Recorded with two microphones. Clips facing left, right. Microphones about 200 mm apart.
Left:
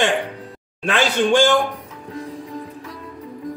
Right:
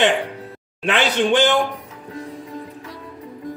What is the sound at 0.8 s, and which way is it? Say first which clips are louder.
Speech: even; 20° right (ahead or behind).